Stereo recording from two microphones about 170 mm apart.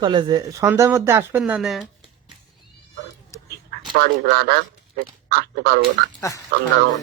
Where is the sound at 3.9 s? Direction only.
65° right (ahead or behind).